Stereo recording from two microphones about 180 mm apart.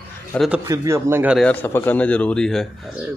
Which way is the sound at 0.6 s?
15° right (ahead or behind).